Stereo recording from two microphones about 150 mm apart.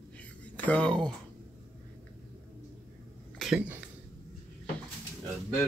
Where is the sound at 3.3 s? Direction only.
5° right (ahead or behind).